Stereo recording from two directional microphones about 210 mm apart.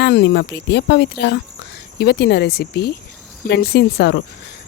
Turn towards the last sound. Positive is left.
turn(degrees=50)  # may be behind; listen again after turning